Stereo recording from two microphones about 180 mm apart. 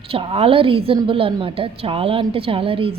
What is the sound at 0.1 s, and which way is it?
A woman's voice, 30° right (ahead or behind).